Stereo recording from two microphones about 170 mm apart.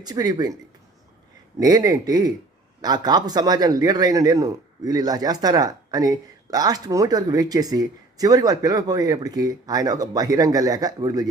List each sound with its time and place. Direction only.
0.0 s a man's voice: 25° right (ahead or behind)
1.5 s a man's voice: 20° right (ahead or behind)